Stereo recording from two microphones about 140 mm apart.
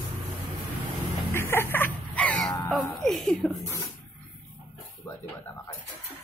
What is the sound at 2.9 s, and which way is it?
Speech, centre (ahead or behind).